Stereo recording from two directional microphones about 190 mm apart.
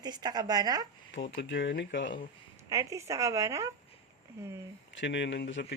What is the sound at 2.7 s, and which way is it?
Speech, 15° right (ahead or behind).